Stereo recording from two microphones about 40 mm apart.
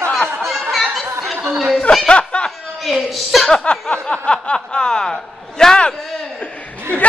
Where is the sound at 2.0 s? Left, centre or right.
Left.